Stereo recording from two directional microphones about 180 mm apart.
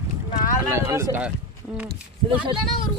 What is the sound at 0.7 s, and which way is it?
Speech, 15° right (ahead or behind).